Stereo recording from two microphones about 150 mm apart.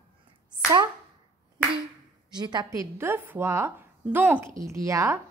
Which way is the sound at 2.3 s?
30° right (ahead or behind).